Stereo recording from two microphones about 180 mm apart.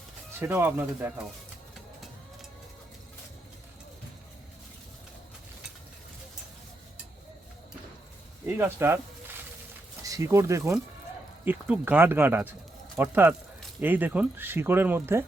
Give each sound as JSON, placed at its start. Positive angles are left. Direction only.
{"t": 0.3, "sound": "speech", "side_deg": -10}
{"t": 8.4, "sound": "speech", "side_deg": -15}
{"t": 10.1, "sound": "speech", "side_deg": -15}